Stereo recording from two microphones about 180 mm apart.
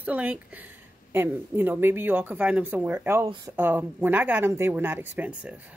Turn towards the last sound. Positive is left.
turn(degrees=-10)  # may be behind; listen again after turning